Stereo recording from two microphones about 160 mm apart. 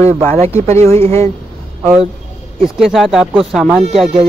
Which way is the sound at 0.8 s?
15° left (ahead or behind).